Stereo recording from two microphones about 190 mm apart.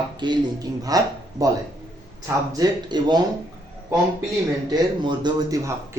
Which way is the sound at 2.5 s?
20° right (ahead or behind).